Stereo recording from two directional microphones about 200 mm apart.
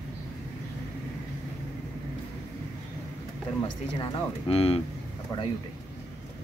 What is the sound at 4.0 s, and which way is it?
Speech, 30° left (ahead or behind).